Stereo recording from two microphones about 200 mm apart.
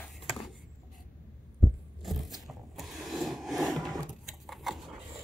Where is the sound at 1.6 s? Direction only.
Centre (ahead or behind).